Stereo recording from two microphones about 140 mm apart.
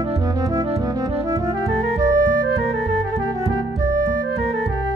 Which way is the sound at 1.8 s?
65° right (ahead or behind).